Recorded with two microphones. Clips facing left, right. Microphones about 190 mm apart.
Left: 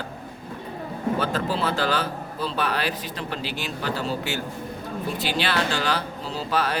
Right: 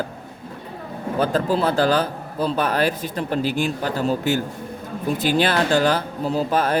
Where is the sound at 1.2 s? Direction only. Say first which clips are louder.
Right 9 dB; 40° right (ahead or behind).